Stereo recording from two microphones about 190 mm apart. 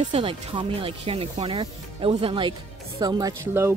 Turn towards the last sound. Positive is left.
turn(degrees=-15)  # may be behind; listen again after turning